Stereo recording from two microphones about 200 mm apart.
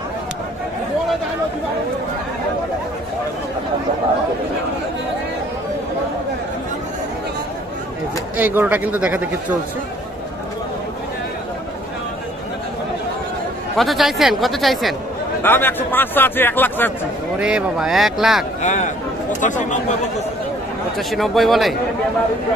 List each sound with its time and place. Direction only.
8.4 s speech: 10° right (ahead or behind)
13.7 s speech: centre (ahead or behind)
15.4 s speech: 10° left (ahead or behind)
17.4 s speech: 5° right (ahead or behind)
18.6 s speech: 35° left (ahead or behind)
21.1 s speech: centre (ahead or behind)